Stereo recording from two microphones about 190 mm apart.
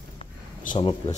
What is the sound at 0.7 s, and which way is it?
Speech, 30° left (ahead or behind).